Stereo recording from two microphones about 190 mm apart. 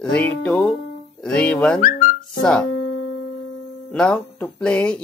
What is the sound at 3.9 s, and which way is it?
Speech, 5° left (ahead or behind).